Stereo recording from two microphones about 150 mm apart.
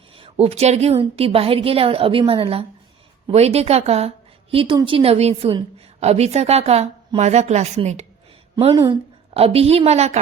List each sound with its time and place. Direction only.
0.2 s a woman's voice: 40° right (ahead or behind)
4.5 s a woman's voice: 30° right (ahead or behind); by 8.0 s 50° right (ahead or behind)
8.7 s speech: 25° right (ahead or behind)
9.3 s a woman's voice: 40° right (ahead or behind)